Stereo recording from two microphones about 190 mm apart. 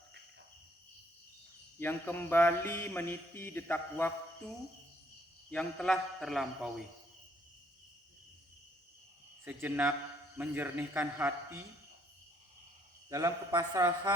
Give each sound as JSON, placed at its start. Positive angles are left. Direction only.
{"t": 1.8, "sound": "a sound", "side_deg": 10}
{"t": 5.5, "sound": "a man's voice", "side_deg": 5}
{"t": 9.4, "sound": "a man's voice", "side_deg": -10}
{"t": 13.1, "sound": "a man's voice", "side_deg": -15}